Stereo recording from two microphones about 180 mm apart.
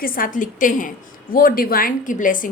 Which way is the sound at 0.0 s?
50° left (ahead or behind).